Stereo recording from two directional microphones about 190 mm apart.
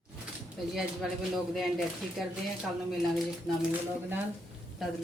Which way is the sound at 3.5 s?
Centre (ahead or behind).